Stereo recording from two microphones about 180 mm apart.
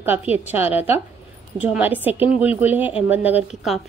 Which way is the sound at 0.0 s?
10° right (ahead or behind).